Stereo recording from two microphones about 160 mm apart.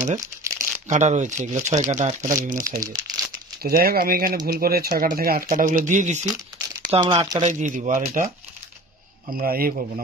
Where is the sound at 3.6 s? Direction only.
70° right (ahead or behind); by 6.2 s 50° right (ahead or behind).